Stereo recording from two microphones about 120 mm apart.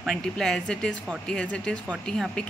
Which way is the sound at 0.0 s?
5° left (ahead or behind).